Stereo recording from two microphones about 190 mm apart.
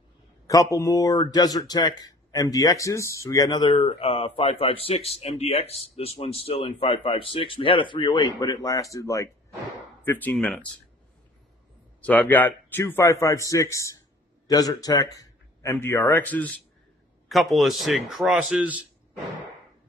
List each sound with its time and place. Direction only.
0.5 s a man's voice: 15° left (ahead or behind)
12.0 s a man's voice: 10° left (ahead or behind)